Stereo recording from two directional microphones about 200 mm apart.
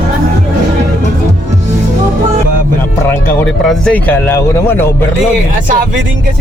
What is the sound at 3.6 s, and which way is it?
Speech, 5° left (ahead or behind).